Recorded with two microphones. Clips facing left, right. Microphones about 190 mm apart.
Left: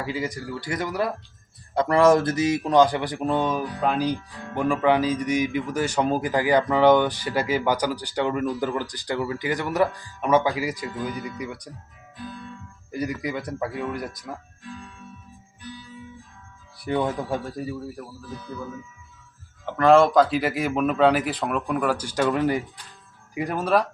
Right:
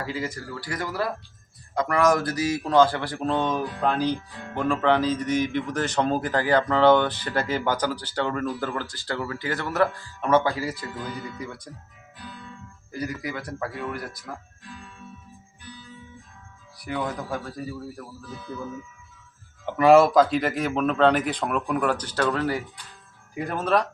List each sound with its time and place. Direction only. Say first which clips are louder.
0.0 s a man's voice: left 2 dB; 15° left (ahead or behind)
1.7 s a man's voice: left 4 dB; 30° left (ahead or behind); by 11.7 s 15° left (ahead or behind)
12.9 s speech: left 3 dB; 20° left (ahead or behind)
16.7 s speech: left 5 dB; 30° left (ahead or behind)
19.6 s a man's voice: right 1 dB; 10° right (ahead or behind); by 23.9 s 5° left (ahead or behind)